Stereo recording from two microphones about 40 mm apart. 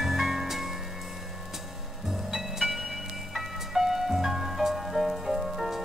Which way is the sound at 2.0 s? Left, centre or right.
Centre.